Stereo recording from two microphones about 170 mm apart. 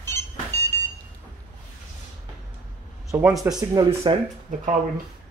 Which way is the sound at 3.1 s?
15° right (ahead or behind).